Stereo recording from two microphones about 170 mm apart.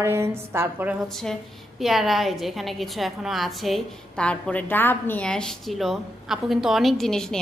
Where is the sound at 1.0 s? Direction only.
Centre (ahead or behind).